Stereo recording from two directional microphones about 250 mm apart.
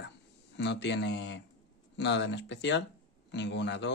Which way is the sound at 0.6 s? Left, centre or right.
Left.